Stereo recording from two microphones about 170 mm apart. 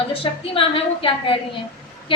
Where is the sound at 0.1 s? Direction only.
35° left (ahead or behind).